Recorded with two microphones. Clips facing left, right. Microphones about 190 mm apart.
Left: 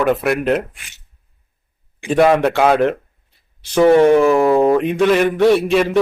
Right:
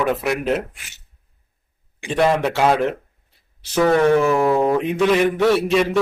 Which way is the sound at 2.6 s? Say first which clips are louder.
Left 3 dB; 60° left (ahead or behind).